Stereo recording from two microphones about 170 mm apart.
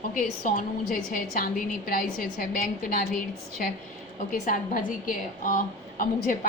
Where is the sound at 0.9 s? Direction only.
55° left (ahead or behind).